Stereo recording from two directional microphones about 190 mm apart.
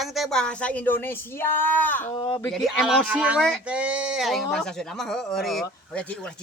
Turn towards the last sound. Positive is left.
turn(degrees=0)  # may be behind; listen again after turning